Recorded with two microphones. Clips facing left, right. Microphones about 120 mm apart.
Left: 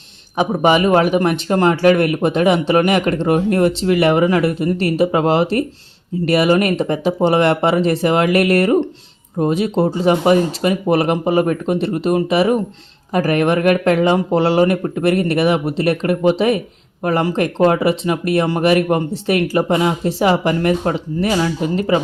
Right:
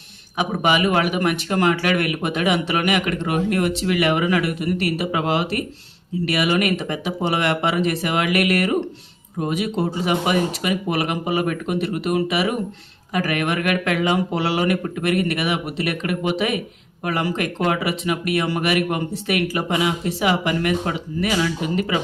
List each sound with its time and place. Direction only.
0.3 s speech: 30° left (ahead or behind)